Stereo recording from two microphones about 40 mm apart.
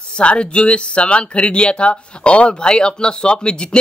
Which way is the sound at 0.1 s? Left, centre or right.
Left.